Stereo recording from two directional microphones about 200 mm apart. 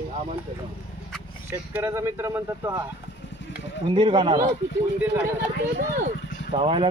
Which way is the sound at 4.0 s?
25° right (ahead or behind).